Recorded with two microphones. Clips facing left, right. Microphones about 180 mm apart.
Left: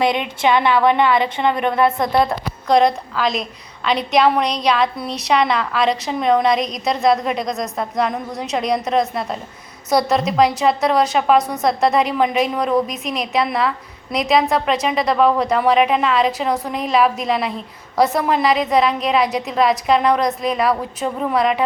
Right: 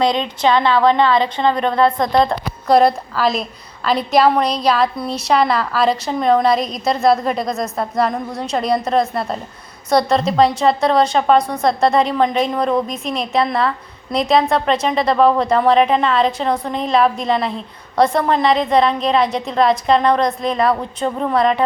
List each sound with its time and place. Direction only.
0.2 s a woman's voice: 15° left (ahead or behind)
2.0 s a woman's voice: 5° left (ahead or behind)
2.6 s a woman's voice: 5° right (ahead or behind)